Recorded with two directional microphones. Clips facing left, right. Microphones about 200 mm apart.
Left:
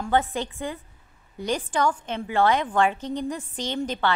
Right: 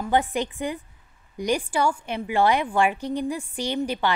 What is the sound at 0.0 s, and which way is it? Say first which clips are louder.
A woman's voice: right 1 dB; 15° right (ahead or behind).